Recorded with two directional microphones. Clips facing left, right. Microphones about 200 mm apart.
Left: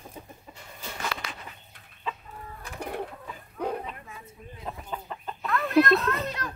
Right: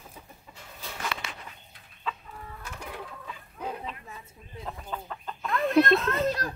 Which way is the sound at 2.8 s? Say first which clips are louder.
Left 8 dB; 55° left (ahead or behind).